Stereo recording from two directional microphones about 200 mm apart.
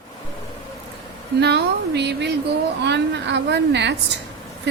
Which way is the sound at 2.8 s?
60° right (ahead or behind).